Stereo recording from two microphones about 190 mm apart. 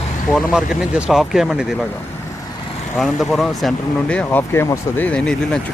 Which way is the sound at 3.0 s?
Centre (ahead or behind).